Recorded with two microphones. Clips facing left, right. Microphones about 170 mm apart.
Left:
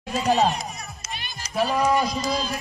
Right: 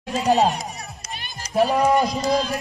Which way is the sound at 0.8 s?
45° right (ahead or behind).